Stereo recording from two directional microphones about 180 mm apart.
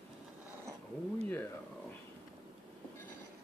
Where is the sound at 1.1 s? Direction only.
10° left (ahead or behind).